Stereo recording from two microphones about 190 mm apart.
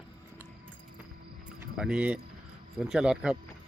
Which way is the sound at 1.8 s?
5° right (ahead or behind).